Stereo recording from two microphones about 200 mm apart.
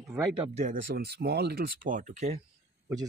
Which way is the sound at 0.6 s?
45° right (ahead or behind).